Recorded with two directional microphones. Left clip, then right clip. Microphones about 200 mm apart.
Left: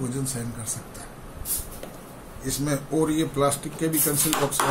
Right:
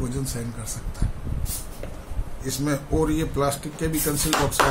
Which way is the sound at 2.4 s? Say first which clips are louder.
Right 1 dB; 30° right (ahead or behind).